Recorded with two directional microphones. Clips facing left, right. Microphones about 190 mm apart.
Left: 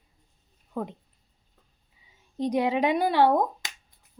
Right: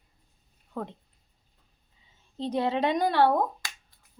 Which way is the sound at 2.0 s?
15° left (ahead or behind).